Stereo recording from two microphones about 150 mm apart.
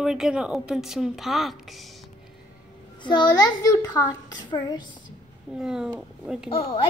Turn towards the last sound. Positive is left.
turn(degrees=40)  # may be behind; listen again after turning